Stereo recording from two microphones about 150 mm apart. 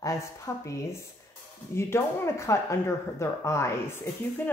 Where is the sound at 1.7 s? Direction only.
15° left (ahead or behind).